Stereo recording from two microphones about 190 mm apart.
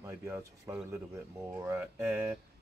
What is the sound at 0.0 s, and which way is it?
Speech, 10° right (ahead or behind).